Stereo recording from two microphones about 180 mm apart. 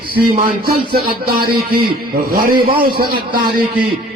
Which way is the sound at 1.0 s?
55° right (ahead or behind).